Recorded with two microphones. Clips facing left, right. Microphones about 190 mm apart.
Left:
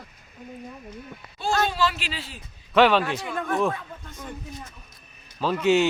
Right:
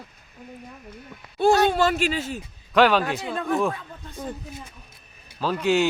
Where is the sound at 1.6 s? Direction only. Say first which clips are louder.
Right 6 dB; 50° right (ahead or behind).